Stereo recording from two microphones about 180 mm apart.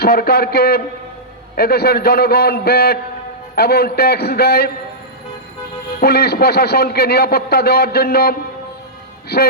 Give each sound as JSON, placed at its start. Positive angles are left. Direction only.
{"t": 0.0, "sound": "a man's voice", "side_deg": 60}
{"t": 6.0, "sound": "a man's voice", "side_deg": 60}